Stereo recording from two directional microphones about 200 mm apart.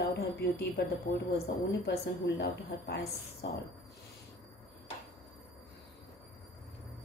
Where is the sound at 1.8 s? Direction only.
55° left (ahead or behind).